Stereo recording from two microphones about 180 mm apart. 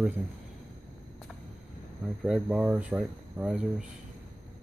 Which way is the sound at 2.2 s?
5° right (ahead or behind).